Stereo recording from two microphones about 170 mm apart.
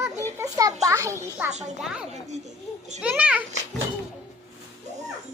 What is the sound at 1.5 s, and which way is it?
Speech, 40° right (ahead or behind).